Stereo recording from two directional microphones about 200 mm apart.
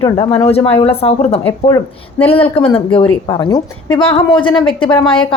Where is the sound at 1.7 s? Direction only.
10° left (ahead or behind).